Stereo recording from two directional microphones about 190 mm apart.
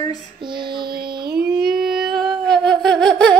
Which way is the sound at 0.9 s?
55° right (ahead or behind).